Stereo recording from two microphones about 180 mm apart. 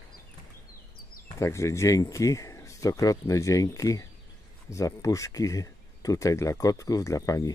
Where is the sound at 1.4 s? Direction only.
15° left (ahead or behind).